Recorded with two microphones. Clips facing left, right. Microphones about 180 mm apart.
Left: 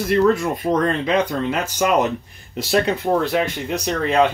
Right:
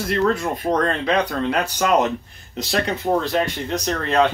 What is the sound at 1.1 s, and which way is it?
Speech, 5° left (ahead or behind).